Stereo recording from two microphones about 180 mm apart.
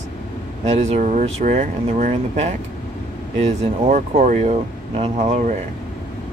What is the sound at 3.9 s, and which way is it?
Speech, 45° right (ahead or behind).